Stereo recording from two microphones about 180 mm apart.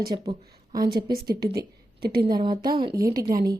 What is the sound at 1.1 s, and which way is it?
A woman's voice, 55° right (ahead or behind).